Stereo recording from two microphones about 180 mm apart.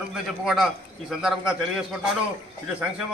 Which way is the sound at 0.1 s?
5° right (ahead or behind).